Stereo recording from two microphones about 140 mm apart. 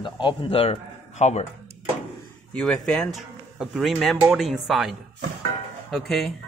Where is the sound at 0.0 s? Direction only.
35° left (ahead or behind); by 1.4 s 50° left (ahead or behind).